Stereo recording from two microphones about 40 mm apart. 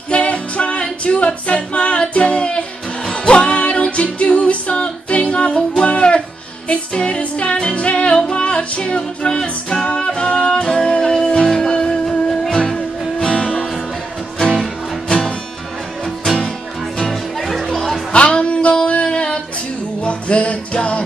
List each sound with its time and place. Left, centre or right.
0.1 s music: left
10.6 s music: centre
15.0 s music: centre
18.1 s music: left